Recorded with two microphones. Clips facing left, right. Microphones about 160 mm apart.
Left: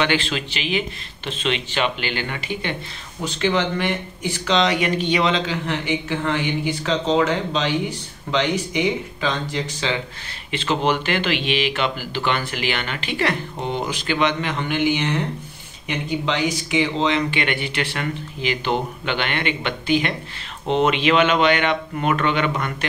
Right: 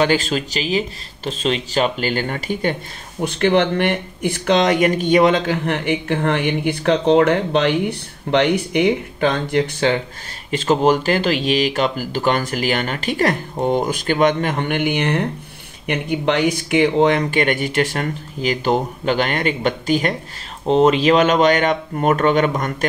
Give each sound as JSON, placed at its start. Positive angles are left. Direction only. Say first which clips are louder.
{"t": 0.0, "sound": "speech", "louder": "right 4 dB", "side_deg": -40}
{"t": 3.2, "sound": "speech", "louder": "right 5 dB", "side_deg": -55}
{"t": 10.5, "sound": "speech", "louder": "right 6 dB", "side_deg": -45}